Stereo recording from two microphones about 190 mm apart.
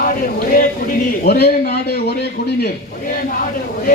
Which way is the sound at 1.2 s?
55° left (ahead or behind).